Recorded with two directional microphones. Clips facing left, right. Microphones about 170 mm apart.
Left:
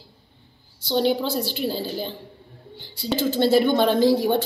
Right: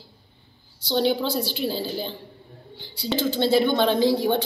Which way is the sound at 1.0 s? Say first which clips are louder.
Even; 45° left (ahead or behind).